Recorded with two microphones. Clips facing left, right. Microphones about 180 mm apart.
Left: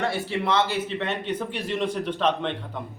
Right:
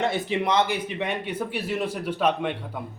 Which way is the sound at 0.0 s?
20° right (ahead or behind).